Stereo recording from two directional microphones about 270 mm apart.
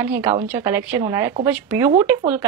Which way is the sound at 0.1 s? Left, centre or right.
Centre.